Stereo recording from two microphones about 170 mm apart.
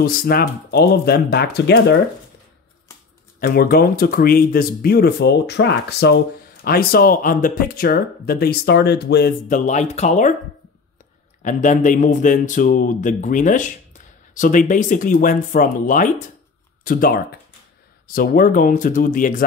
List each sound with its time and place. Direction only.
0.0 s speech: 60° left (ahead or behind)
3.3 s speech: 60° left (ahead or behind); by 9.3 s 75° left (ahead or behind)
9.5 s a man's voice: 45° left (ahead or behind)
11.4 s a man's voice: 50° left (ahead or behind)